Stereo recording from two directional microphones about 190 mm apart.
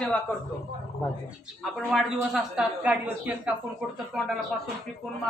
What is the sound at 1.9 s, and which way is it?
A woman's voice, centre (ahead or behind).